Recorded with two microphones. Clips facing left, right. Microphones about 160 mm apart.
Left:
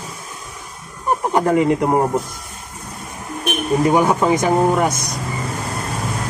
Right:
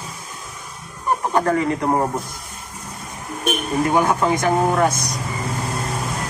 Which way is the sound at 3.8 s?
15° left (ahead or behind).